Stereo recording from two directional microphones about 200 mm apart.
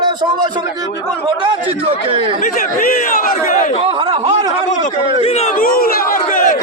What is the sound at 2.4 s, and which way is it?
Speech, 45° left (ahead or behind).